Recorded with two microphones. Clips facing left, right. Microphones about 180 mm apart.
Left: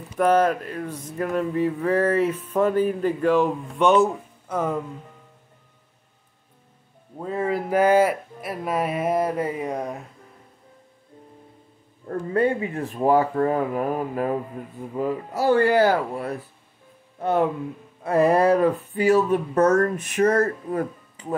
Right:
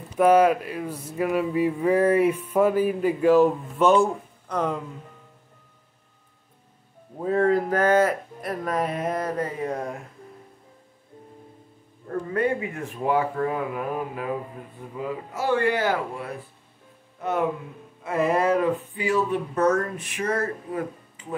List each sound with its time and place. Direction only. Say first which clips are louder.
0.2 s speech: right 2 dB; 10° right (ahead or behind); by 4.7 s 5° left (ahead or behind)
7.2 s speech: right 4 dB; 5° left (ahead or behind)
12.3 s speech: left 3 dB; 30° left (ahead or behind)
18.0 s speech: left 4 dB; 35° left (ahead or behind)